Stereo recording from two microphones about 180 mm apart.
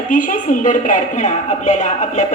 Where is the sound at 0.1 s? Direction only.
45° left (ahead or behind).